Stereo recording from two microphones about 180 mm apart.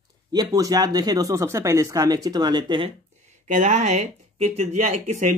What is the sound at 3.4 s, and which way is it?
Speech, 40° right (ahead or behind).